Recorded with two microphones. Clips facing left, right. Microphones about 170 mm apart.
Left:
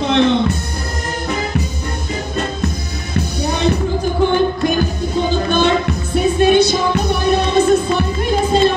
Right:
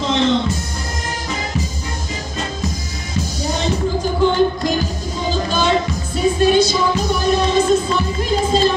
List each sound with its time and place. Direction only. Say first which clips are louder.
0.0 s speech: left 3 dB; 60° left (ahead or behind)
3.2 s music: left 3 dB; 60° left (ahead or behind)